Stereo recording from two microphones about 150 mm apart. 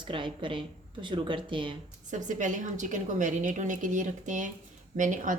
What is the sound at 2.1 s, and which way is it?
A woman's voice, 55° right (ahead or behind).